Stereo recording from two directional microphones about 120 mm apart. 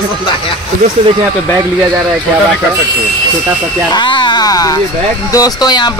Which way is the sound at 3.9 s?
40° left (ahead or behind).